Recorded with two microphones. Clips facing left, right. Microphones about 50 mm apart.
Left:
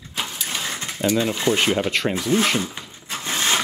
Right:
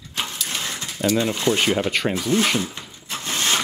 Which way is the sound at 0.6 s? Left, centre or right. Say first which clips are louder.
Even; left.